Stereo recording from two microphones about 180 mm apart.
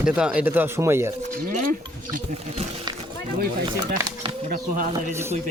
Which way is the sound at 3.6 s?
25° right (ahead or behind).